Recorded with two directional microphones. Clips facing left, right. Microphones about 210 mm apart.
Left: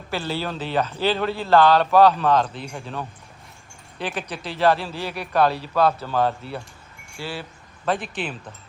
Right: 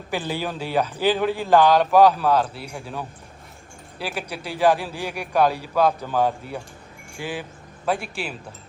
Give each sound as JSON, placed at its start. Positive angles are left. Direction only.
{"t": 0.1, "sound": "a man's voice", "side_deg": -15}